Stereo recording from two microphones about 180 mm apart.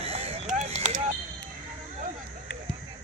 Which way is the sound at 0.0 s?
35° right (ahead or behind).